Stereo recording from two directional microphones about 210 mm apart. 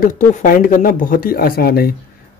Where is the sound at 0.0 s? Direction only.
40° left (ahead or behind).